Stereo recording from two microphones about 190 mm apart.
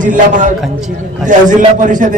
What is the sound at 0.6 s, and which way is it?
Speech, centre (ahead or behind).